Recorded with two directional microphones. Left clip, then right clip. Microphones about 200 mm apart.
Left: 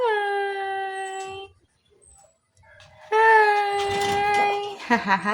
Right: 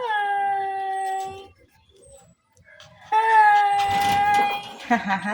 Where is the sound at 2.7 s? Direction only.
20° left (ahead or behind).